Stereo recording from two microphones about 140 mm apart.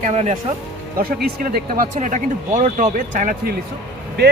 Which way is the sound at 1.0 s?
90° right.